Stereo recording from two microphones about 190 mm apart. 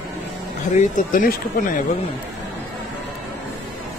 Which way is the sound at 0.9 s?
45° left (ahead or behind).